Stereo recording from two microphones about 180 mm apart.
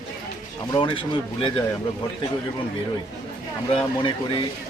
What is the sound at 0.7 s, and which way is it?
Speech, 25° left (ahead or behind).